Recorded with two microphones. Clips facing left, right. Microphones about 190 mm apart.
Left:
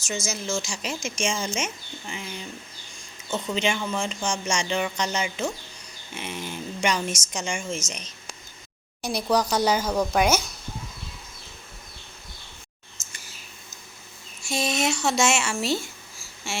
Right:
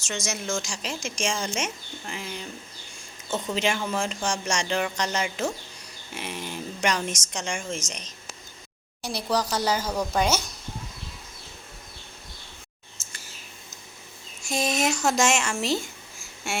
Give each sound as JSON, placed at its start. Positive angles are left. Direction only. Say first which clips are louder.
{"t": 0.0, "sound": "speech", "louder": "left 1 dB", "side_deg": 5}
{"t": 9.0, "sound": "a woman's voice", "louder": "left 3 dB", "side_deg": 15}
{"t": 14.4, "sound": "speech", "louder": "even", "side_deg": 0}
{"t": 15.6, "sound": "speech", "louder": "even", "side_deg": -40}